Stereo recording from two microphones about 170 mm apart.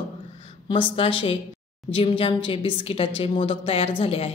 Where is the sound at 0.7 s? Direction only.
30° left (ahead or behind).